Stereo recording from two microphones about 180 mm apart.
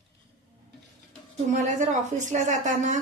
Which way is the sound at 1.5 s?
45° right (ahead or behind).